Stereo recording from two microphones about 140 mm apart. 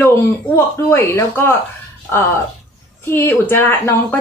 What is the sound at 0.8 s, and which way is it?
Speech, 20° left (ahead or behind).